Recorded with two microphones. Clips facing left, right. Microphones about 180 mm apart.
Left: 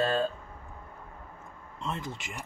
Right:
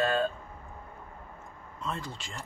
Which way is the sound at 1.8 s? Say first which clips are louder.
Left 1 dB; 20° left (ahead or behind).